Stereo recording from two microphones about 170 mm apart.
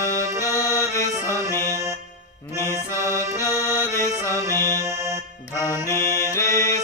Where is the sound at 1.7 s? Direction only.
15° right (ahead or behind).